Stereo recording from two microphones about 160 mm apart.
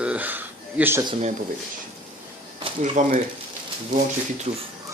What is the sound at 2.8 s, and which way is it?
Speech, 50° right (ahead or behind).